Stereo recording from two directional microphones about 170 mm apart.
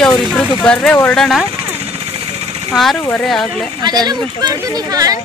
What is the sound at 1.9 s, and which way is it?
Vehicle, 35° right (ahead or behind).